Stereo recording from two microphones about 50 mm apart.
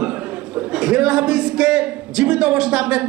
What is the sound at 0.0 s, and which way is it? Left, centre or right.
A man's voice, right.